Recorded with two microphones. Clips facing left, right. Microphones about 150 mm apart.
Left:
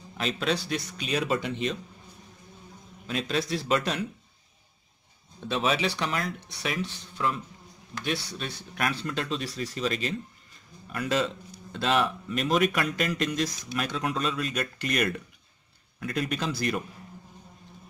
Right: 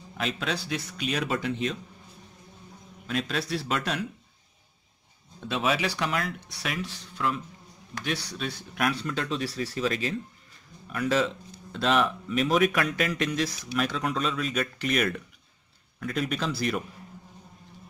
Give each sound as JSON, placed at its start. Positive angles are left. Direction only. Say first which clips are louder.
{"t": 0.2, "sound": "speech", "louder": "left 2 dB", "side_deg": 0}
{"t": 3.1, "sound": "speech", "louder": "left 1 dB", "side_deg": 0}
{"t": 5.5, "sound": "speech", "louder": "even", "side_deg": -5}